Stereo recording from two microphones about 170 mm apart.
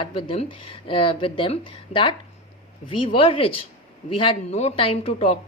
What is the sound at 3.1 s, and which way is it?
Speech, 35° left (ahead or behind).